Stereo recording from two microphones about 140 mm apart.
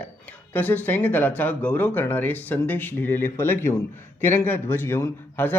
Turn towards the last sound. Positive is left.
turn(degrees=15)  # may be behind; listen again after turning